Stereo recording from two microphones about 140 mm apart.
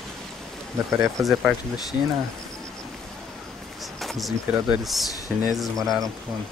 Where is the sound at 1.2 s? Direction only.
5° right (ahead or behind).